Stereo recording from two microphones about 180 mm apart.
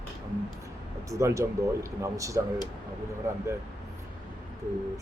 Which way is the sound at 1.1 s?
15° right (ahead or behind).